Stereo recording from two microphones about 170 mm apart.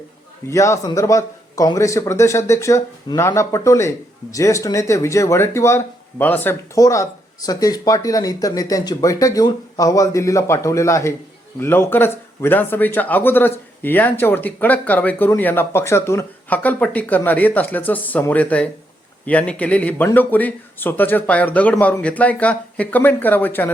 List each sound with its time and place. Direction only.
0.4 s a man's voice: 15° left (ahead or behind)